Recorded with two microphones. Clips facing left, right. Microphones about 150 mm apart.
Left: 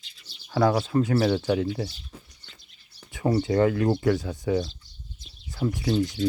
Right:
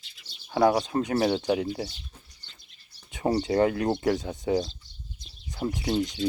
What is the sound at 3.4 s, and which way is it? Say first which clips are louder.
Speech: left 2 dB; 20° right (ahead or behind).